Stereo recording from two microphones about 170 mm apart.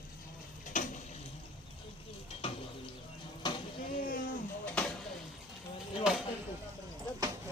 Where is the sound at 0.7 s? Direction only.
50° left (ahead or behind).